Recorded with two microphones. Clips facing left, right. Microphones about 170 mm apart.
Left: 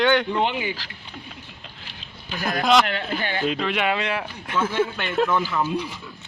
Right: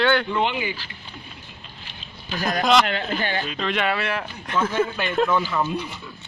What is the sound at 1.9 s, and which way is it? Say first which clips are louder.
Speech: right 3 dB; 10° left (ahead or behind).